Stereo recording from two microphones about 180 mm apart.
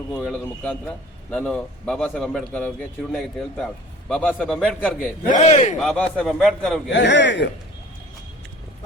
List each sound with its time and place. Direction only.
0.2 s a man's voice: 5° left (ahead or behind)
5.4 s speech: 40° left (ahead or behind)
5.8 s a man's voice: 5° left (ahead or behind)
6.9 s a man's voice: 85° left